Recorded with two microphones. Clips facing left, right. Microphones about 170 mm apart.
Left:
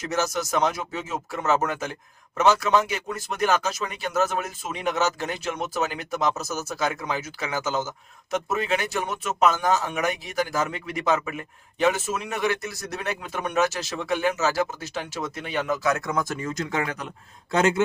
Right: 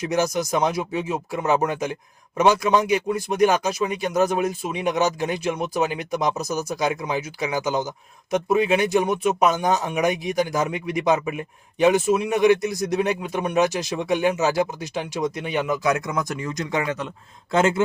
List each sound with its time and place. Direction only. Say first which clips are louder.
0.0 s a man's voice: right 4 dB; 15° right (ahead or behind)